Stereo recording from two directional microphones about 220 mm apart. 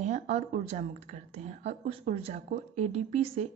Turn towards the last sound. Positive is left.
turn(degrees=-30)  # may be behind; listen again after turning